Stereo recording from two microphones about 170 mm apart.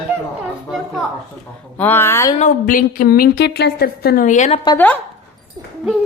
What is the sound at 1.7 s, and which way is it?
Speech, 10° left (ahead or behind).